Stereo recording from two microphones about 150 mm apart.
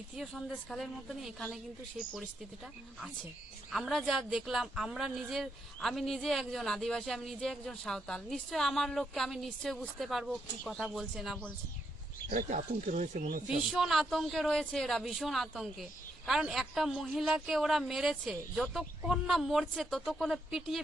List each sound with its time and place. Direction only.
0.2 s speech: centre (ahead or behind)
3.7 s speech: centre (ahead or behind)
12.3 s speech: 60° right (ahead or behind)
13.7 s speech: centre (ahead or behind)